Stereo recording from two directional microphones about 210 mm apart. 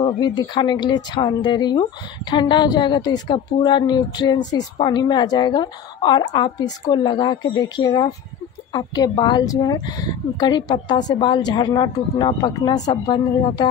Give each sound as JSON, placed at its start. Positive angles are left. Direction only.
{"t": 0.0, "sound": "speech", "side_deg": 20}